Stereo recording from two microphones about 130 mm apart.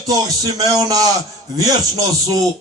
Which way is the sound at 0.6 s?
30° right (ahead or behind).